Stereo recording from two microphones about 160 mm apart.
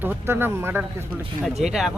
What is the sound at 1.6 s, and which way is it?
Speech, 5° right (ahead or behind).